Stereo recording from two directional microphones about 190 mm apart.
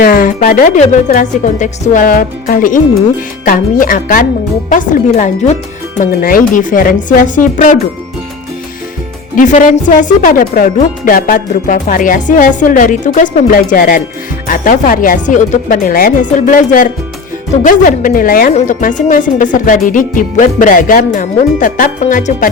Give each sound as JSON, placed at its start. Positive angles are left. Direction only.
{"t": 0.0, "sound": "a sound", "side_deg": 50}
{"t": 0.8, "sound": "a woman's voice", "side_deg": 40}
{"t": 9.3, "sound": "a woman's voice", "side_deg": 40}